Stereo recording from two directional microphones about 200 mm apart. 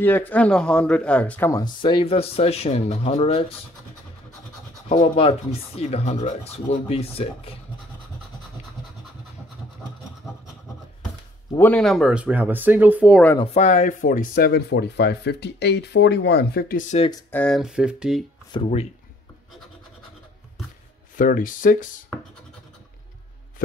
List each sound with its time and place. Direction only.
0.0 s speech: 10° left (ahead or behind)
1.6 s speech: 25° left (ahead or behind)
4.8 s speech: 30° left (ahead or behind)
11.5 s speech: 10° left (ahead or behind)
13.4 s speech: 30° left (ahead or behind); by 16.8 s 50° left (ahead or behind)
17.1 s speech: 10° left (ahead or behind)
21.2 s speech: 40° left (ahead or behind)